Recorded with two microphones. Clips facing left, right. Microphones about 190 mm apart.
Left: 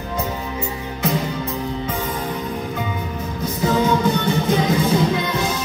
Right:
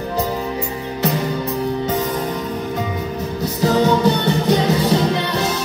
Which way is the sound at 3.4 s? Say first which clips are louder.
Right 3 dB; 40° right (ahead or behind).